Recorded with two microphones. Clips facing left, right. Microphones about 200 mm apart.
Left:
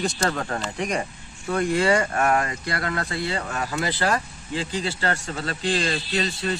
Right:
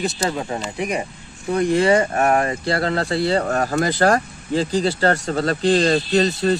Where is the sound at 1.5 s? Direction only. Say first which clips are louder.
Right 5 dB; 25° right (ahead or behind).